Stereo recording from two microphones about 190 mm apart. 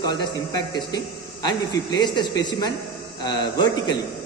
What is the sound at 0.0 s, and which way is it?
Speech, 20° left (ahead or behind).